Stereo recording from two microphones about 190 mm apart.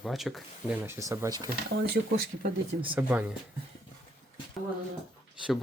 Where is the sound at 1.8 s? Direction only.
50° right (ahead or behind).